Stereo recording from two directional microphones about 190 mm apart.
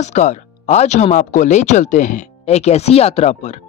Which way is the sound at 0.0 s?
40° left (ahead or behind).